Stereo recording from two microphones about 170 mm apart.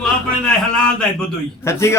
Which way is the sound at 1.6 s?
15° left (ahead or behind).